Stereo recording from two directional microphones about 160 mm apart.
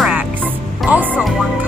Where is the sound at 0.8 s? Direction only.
10° right (ahead or behind).